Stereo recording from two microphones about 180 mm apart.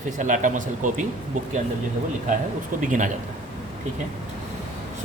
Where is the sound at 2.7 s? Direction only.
45° right (ahead or behind).